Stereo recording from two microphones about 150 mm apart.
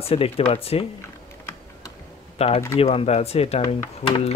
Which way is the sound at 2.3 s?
40° left (ahead or behind).